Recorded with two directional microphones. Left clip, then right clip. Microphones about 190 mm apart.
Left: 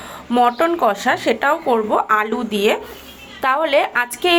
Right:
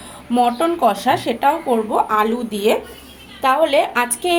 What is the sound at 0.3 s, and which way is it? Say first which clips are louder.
A woman's voice: left 1 dB; 10° left (ahead or behind).